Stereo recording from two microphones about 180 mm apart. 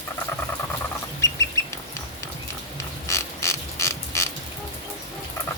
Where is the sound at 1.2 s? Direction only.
15° left (ahead or behind).